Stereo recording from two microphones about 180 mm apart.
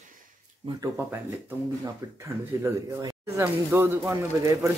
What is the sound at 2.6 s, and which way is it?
Speech, 15° right (ahead or behind).